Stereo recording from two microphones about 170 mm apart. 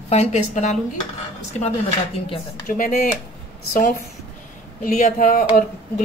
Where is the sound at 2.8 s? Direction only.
55° left (ahead or behind).